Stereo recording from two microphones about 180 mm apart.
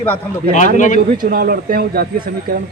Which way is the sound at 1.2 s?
55° right (ahead or behind).